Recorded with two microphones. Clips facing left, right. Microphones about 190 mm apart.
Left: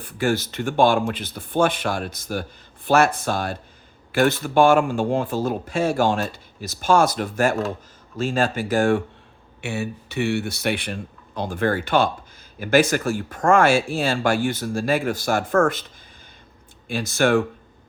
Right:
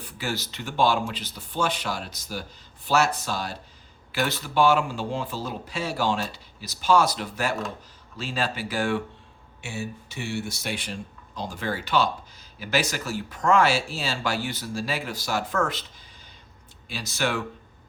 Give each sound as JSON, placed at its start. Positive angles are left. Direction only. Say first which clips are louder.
{"t": 0.0, "sound": "speech", "louder": "left 9 dB", "side_deg": 50}
{"t": 9.6, "sound": "speech", "louder": "left 6 dB", "side_deg": 65}
{"t": 16.9, "sound": "speech", "louder": "left 9 dB", "side_deg": 50}